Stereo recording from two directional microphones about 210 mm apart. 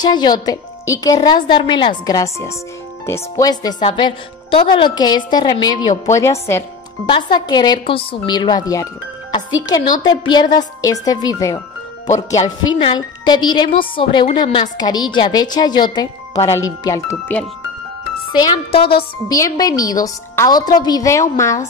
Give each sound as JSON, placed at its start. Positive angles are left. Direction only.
{"t": 0.0, "sound": "speech", "side_deg": 20}
{"t": 7.1, "sound": "speech", "side_deg": 20}
{"t": 18.3, "sound": "a woman's voice", "side_deg": 25}